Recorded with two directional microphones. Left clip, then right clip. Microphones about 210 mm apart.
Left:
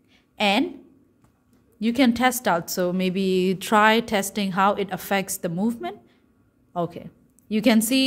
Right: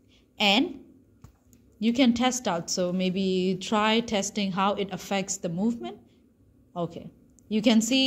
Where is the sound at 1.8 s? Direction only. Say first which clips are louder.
Left 3 dB; 25° left (ahead or behind).